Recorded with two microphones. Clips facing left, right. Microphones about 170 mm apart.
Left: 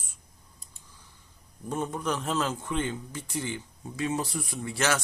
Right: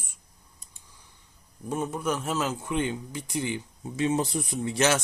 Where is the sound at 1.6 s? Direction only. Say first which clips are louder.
Right 2 dB; 10° right (ahead or behind).